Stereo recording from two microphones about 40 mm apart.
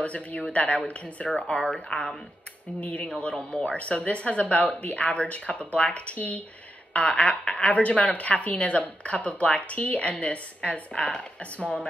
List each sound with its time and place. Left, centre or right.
0.0 s speech: left